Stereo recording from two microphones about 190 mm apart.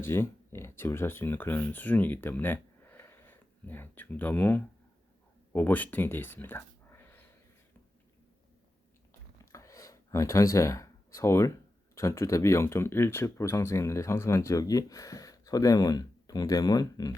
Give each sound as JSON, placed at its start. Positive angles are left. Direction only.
{"t": 0.0, "sound": "speech", "side_deg": 10}
{"t": 9.4, "sound": "a sound", "side_deg": 15}
{"t": 11.9, "sound": "speech", "side_deg": 15}